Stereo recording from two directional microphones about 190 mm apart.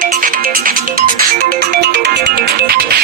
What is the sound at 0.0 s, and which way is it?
Music, 45° right (ahead or behind).